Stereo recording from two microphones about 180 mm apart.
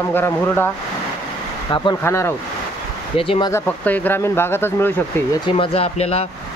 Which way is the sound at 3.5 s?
10° left (ahead or behind).